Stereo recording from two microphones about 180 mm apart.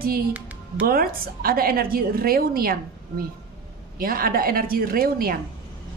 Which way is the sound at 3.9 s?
55° right (ahead or behind).